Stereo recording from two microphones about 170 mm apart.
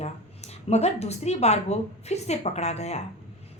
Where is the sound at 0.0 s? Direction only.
40° left (ahead or behind).